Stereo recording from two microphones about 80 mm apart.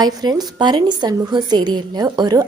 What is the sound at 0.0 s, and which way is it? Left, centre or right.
A woman's voice, right.